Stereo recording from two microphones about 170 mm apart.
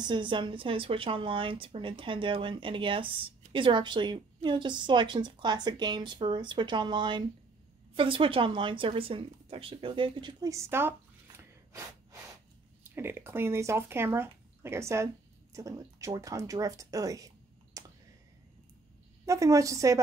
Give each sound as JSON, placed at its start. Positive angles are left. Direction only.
{"t": 0.0, "sound": "a woman's voice", "side_deg": -25}
{"t": 17.8, "sound": "a sound", "side_deg": -20}
{"t": 19.2, "sound": "a woman's voice", "side_deg": -20}